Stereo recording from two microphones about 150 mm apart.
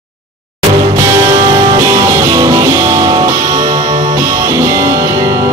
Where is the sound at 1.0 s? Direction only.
20° right (ahead or behind).